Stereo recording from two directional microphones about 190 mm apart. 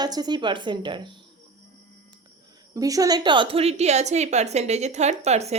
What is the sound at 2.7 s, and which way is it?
A woman's voice, 20° right (ahead or behind).